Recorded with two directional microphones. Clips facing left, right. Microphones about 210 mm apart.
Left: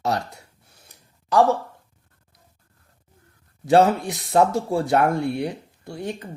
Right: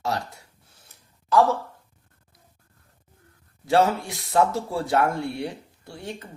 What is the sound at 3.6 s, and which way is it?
Speech, 20° left (ahead or behind).